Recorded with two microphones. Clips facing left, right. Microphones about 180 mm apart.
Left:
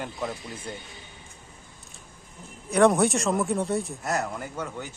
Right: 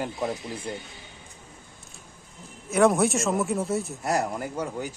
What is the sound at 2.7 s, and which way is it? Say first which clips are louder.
Speech: left 1 dB; centre (ahead or behind).